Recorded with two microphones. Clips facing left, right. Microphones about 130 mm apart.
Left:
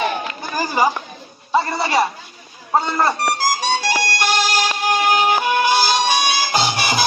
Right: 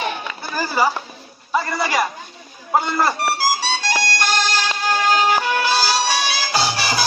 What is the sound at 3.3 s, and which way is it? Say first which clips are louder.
Music: even; 10° right (ahead or behind).